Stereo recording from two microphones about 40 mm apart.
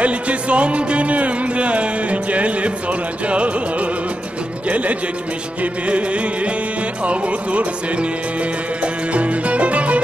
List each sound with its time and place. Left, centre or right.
0.0 s music: right